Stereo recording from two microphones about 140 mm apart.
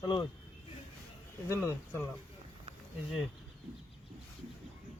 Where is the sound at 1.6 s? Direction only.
20° left (ahead or behind).